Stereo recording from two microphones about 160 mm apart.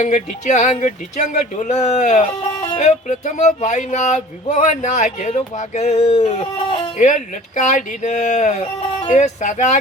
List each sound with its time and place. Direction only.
0.0 s music: 50° left (ahead or behind)
7.0 s music: 50° left (ahead or behind)